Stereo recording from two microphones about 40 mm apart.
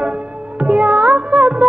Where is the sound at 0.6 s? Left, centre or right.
Right.